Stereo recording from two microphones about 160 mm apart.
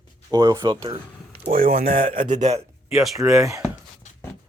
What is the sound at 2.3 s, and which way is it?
Speech, 45° right (ahead or behind).